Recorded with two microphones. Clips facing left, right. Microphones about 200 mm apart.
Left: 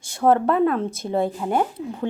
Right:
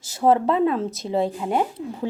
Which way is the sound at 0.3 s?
20° right (ahead or behind).